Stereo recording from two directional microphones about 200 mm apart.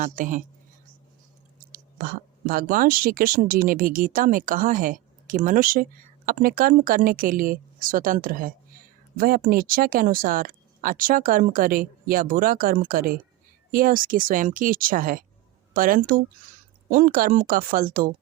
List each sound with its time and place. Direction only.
0.0 s a woman's voice: 40° right (ahead or behind)
1.7 s speech: 45° right (ahead or behind)